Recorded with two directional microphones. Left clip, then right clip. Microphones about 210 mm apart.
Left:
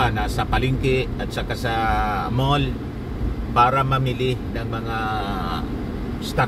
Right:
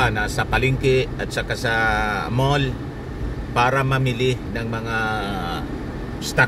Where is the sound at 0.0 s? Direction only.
15° right (ahead or behind).